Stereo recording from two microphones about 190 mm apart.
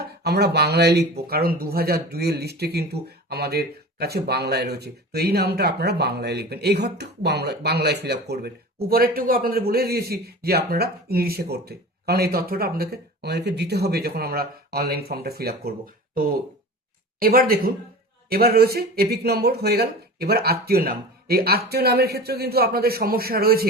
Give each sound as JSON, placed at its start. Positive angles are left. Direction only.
{"t": 0.0, "sound": "speech", "side_deg": -55}